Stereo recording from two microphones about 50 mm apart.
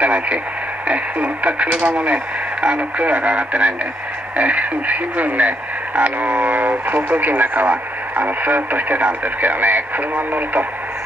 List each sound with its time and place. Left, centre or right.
0.0 s speech: right